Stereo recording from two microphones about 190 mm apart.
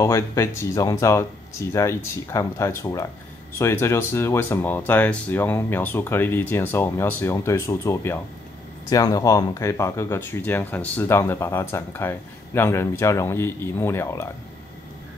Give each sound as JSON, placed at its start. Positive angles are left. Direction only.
{"t": 0.0, "sound": "speech", "side_deg": 15}